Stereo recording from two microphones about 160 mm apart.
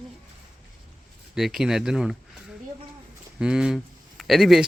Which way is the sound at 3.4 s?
5° right (ahead or behind).